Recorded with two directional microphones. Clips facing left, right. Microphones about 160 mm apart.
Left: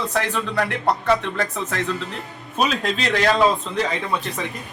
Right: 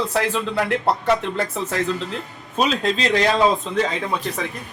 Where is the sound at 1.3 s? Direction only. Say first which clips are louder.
Right 1 dB; 25° right (ahead or behind).